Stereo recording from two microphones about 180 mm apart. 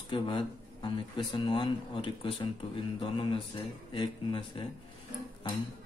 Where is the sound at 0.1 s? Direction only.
25° left (ahead or behind).